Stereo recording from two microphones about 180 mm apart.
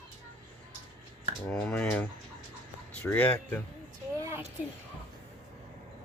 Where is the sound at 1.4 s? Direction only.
5° left (ahead or behind).